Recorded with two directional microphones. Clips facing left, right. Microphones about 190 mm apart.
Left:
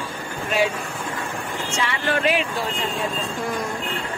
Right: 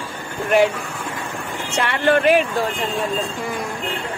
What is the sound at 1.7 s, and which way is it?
Speech, 60° right (ahead or behind).